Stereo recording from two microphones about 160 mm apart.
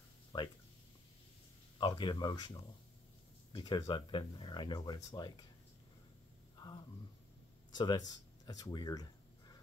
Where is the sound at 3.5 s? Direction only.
30° left (ahead or behind).